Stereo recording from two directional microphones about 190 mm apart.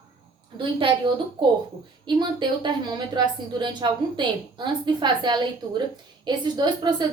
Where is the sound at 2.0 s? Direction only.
25° right (ahead or behind).